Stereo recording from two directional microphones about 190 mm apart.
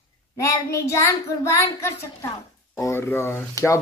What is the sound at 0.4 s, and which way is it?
Speech, 15° left (ahead or behind).